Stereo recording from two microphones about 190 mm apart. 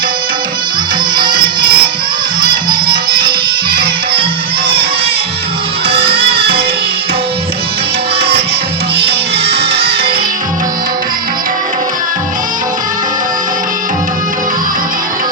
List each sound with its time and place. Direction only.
1.1 s music: 25° right (ahead or behind)
5.9 s music: 30° right (ahead or behind)
9.0 s music: 30° right (ahead or behind)